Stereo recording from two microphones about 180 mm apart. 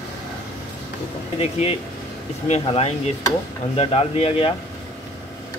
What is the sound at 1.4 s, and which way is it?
Speech, 35° left (ahead or behind).